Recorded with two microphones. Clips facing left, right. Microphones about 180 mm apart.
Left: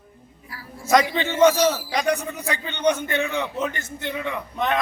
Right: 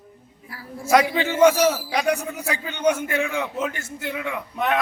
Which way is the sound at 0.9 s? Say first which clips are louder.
Right 1 dB; 10° right (ahead or behind).